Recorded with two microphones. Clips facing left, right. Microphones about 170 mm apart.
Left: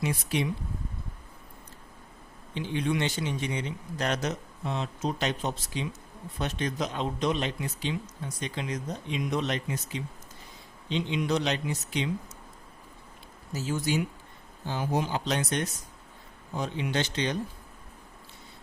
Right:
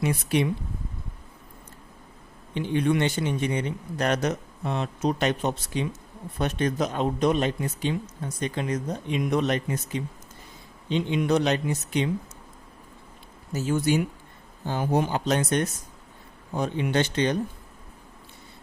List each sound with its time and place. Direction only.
0.0 s a man's voice: 60° right (ahead or behind)
2.6 s a man's voice: 55° right (ahead or behind)
13.5 s a man's voice: 55° right (ahead or behind)